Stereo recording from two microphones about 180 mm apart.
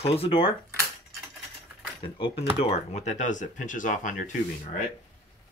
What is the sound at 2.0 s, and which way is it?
Speech, 30° left (ahead or behind).